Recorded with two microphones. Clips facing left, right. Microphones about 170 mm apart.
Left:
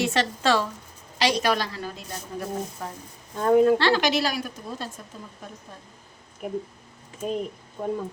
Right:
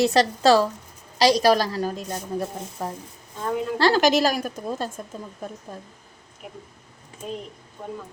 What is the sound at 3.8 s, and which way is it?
A woman's voice, 40° right (ahead or behind).